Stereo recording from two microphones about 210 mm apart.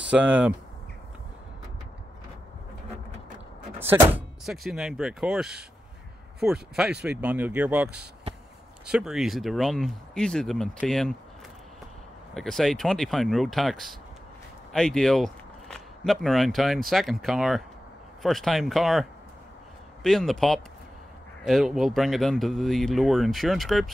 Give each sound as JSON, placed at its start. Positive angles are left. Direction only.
{"t": 0.1, "sound": "speech", "side_deg": -5}
{"t": 4.5, "sound": "speech", "side_deg": 0}
{"t": 12.4, "sound": "speech", "side_deg": 0}